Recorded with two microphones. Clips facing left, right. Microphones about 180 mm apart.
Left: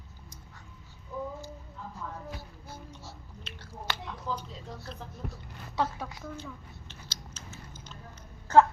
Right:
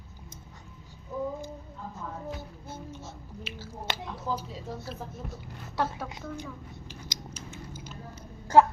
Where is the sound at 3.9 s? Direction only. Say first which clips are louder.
Right 1 dB; 20° right (ahead or behind).